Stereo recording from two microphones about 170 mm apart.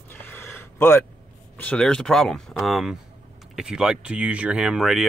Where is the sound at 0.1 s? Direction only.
10° left (ahead or behind).